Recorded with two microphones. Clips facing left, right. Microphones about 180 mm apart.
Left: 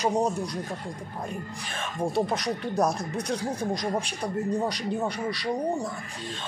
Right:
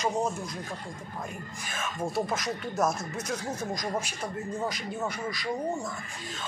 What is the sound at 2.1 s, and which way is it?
Speech, 35° left (ahead or behind).